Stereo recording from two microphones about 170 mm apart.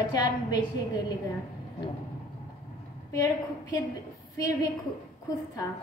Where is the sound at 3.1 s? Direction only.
20° left (ahead or behind).